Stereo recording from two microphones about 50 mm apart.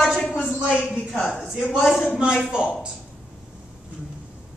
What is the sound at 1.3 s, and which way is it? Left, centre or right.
A woman's voice, centre.